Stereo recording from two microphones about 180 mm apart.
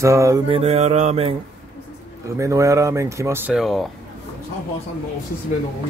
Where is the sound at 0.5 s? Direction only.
35° right (ahead or behind).